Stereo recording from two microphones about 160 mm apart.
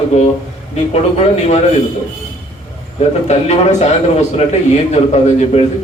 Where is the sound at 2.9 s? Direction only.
40° left (ahead or behind).